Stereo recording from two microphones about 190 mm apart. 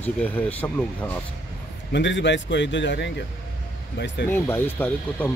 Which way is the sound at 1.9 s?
70° left (ahead or behind).